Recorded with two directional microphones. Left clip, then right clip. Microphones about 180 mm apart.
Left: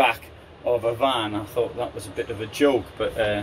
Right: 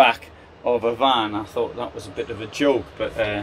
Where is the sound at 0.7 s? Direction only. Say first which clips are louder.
Right 3 dB; 45° right (ahead or behind).